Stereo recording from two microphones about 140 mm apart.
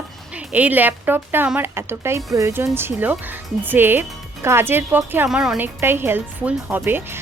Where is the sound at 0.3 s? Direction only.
10° right (ahead or behind).